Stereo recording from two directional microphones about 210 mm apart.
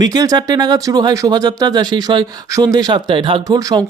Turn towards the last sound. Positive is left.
turn(degrees=-20)  # may be behind; listen again after turning